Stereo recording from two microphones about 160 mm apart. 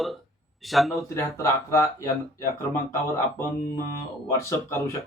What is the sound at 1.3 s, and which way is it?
A man's voice, 15° left (ahead or behind).